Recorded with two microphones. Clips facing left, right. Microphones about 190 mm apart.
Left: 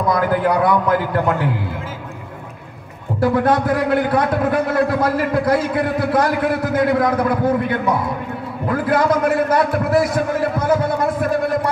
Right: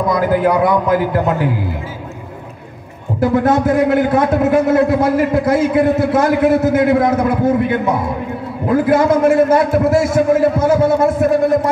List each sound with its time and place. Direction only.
0.1 s a man's voice: 25° right (ahead or behind)
3.2 s a man's voice: 25° right (ahead or behind)